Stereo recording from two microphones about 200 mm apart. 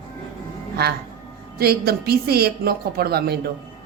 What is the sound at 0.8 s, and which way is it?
A woman's voice, 55° right (ahead or behind).